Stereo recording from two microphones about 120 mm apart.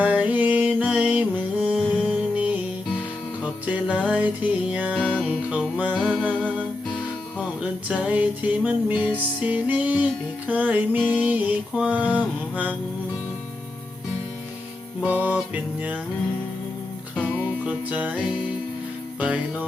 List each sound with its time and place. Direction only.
0.0 s music: 15° right (ahead or behind)
4.9 s music: 10° left (ahead or behind)
5.2 s music: 10° right (ahead or behind)
6.0 s music: centre (ahead or behind)
7.3 s music: 5° right (ahead or behind)
8.9 s music: 40° left (ahead or behind)
9.1 s music: 15° right (ahead or behind)
15.0 s music: 15° right (ahead or behind)
17.6 s music: 10° right (ahead or behind)
19.2 s music: 10° right (ahead or behind)